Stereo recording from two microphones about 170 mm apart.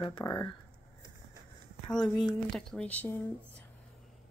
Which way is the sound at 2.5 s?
5° left (ahead or behind).